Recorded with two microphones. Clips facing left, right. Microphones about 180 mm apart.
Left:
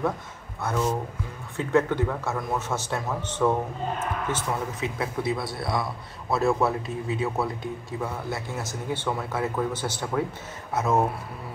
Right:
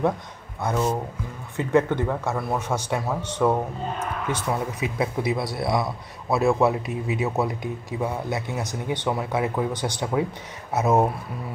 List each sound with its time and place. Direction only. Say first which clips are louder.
0.6 s speech: right 2 dB; 15° right (ahead or behind)